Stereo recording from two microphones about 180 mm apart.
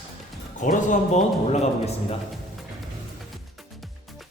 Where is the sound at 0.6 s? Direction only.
40° left (ahead or behind).